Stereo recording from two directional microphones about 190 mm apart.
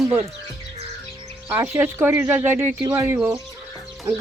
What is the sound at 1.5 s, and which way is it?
Speech, 15° right (ahead or behind).